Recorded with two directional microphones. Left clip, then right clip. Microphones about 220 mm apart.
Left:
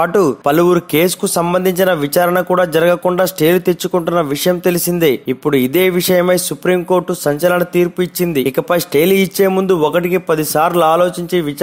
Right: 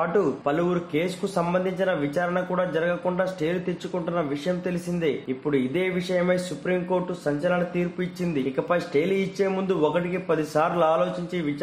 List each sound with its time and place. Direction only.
0.0 s speech: 45° left (ahead or behind)